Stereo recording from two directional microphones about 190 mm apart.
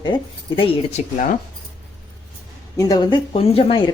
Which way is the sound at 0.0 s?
25° left (ahead or behind).